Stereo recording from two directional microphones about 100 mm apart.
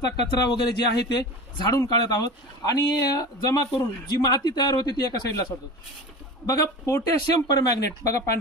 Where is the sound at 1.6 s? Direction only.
40° left (ahead or behind).